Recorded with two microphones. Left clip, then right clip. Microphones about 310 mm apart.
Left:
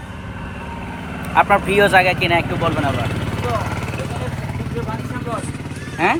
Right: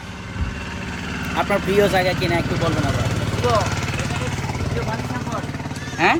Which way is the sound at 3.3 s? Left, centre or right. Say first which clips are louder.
Right 5 dB; left.